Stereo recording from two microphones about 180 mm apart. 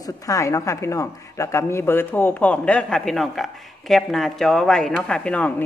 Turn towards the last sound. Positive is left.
turn(degrees=5)  # may be behind; listen again after turning